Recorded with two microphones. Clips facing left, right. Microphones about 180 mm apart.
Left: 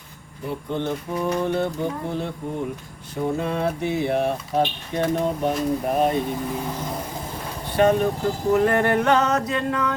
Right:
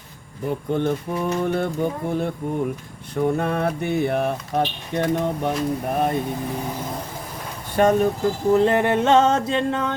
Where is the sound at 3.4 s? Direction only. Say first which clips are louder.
Right 1 dB; 55° right (ahead or behind).